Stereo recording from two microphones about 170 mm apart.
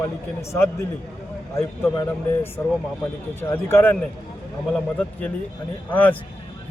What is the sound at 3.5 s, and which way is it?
Speech, 15° left (ahead or behind).